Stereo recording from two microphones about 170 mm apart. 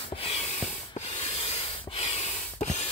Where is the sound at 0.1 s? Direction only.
35° left (ahead or behind).